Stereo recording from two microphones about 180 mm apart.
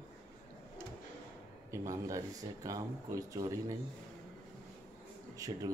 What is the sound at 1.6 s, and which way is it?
Speech, 20° right (ahead or behind).